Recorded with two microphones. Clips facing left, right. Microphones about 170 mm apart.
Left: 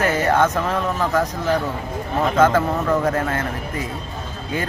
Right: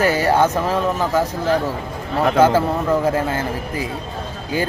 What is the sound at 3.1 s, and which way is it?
Speech, 30° right (ahead or behind).